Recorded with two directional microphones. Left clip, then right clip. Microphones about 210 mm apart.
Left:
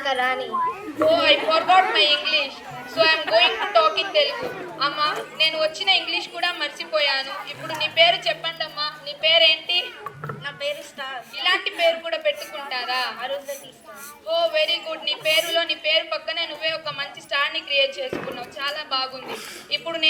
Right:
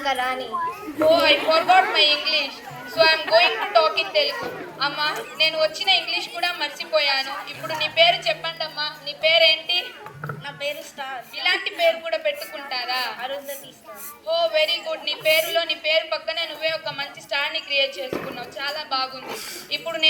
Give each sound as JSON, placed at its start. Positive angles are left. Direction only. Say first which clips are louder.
{"t": 0.0, "sound": "speech", "louder": "left 1 dB", "side_deg": 15}